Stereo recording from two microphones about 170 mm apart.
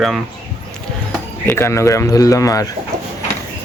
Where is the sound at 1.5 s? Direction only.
15° left (ahead or behind).